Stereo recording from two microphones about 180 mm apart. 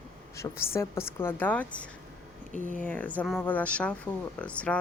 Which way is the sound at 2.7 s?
10° left (ahead or behind).